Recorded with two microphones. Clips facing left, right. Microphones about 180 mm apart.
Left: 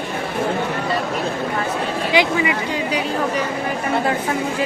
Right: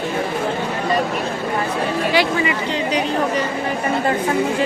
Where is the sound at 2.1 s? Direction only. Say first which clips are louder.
Left 3 dB; 15° left (ahead or behind).